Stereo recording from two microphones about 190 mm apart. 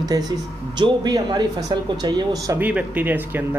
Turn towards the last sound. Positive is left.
turn(degrees=-10)  # may be behind; listen again after turning